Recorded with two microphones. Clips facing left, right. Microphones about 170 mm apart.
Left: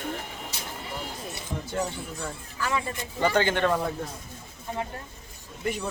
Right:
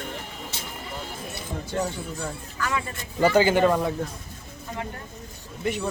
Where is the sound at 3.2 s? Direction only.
10° right (ahead or behind).